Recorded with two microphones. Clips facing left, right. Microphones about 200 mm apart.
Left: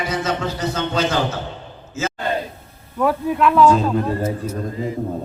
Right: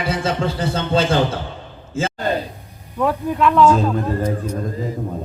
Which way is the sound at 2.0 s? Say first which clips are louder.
Right 3 dB; 30° right (ahead or behind).